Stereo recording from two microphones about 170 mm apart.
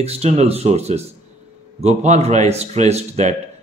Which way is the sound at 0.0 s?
40° right (ahead or behind).